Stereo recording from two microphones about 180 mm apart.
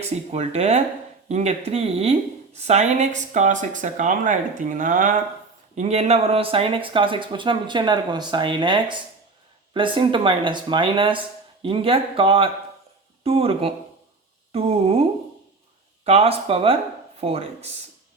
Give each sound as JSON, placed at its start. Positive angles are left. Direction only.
{"t": 0.3, "sound": "a woman's voice", "side_deg": -35}
{"t": 16.0, "sound": "speech", "side_deg": -35}